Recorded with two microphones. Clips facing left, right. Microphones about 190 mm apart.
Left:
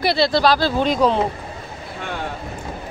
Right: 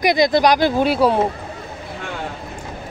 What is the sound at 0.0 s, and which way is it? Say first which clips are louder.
Speech: right 2 dB; 15° right (ahead or behind).